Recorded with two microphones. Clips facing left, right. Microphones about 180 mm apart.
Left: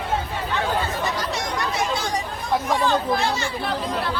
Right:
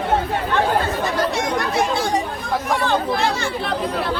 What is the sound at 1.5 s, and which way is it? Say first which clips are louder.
Children playing: right 5 dB; 60° right (ahead or behind).